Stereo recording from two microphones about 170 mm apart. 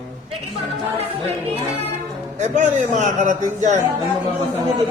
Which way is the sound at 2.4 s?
45° right (ahead or behind).